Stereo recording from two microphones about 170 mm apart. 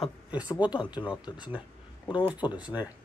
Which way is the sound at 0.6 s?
30° left (ahead or behind).